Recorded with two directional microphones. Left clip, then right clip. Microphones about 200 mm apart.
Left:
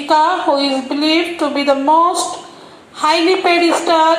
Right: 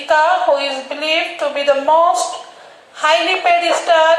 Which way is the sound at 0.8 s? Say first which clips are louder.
Left 2 dB; 45° left (ahead or behind).